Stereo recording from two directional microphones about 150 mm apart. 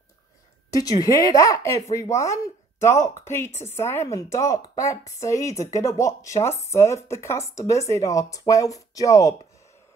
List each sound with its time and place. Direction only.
0.7 s a woman's voice: 25° left (ahead or behind)